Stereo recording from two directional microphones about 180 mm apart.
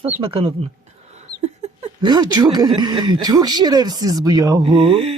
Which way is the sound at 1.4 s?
35° right (ahead or behind).